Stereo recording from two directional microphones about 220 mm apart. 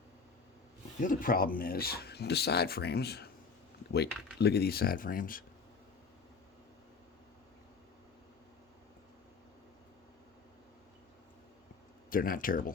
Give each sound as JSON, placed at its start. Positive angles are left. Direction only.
{"t": 1.0, "sound": "speech", "side_deg": 40}
{"t": 12.1, "sound": "speech", "side_deg": 40}